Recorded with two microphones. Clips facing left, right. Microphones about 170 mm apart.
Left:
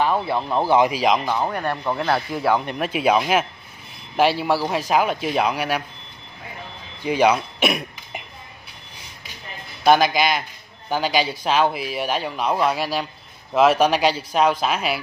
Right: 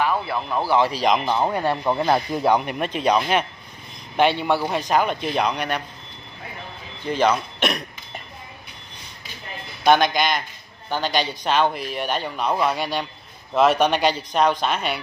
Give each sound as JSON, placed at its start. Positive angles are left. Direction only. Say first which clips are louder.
{"t": 0.0, "sound": "speech", "louder": "left 2 dB", "side_deg": 25}
{"t": 1.2, "sound": "speech", "louder": "right 2 dB", "side_deg": -15}
{"t": 2.8, "sound": "speech", "louder": "left 1 dB", "side_deg": 5}
{"t": 7.0, "sound": "speech", "louder": "left 2 dB", "side_deg": 10}
{"t": 9.8, "sound": "speech", "louder": "left 1 dB", "side_deg": 5}